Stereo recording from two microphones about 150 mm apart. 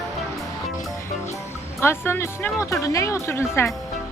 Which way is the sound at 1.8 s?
15° left (ahead or behind).